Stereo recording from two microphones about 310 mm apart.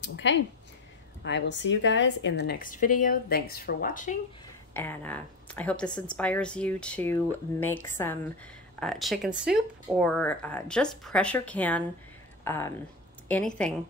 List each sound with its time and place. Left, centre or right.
0.0 s a woman's voice: left
4.7 s a woman's voice: centre